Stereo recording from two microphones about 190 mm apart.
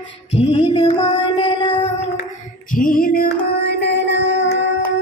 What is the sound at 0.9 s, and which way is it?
Music, 30° left (ahead or behind).